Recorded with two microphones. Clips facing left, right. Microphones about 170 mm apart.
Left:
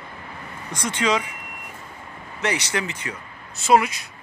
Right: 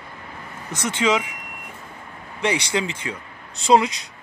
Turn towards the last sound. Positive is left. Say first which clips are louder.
# right 1 dB
turn(degrees=-20)  # may be behind; listen again after turning